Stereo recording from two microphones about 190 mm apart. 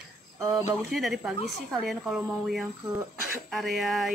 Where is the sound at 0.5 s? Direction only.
Centre (ahead or behind).